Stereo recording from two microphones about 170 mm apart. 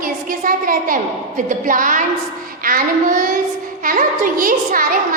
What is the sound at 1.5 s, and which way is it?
A woman's voice, 50° right (ahead or behind).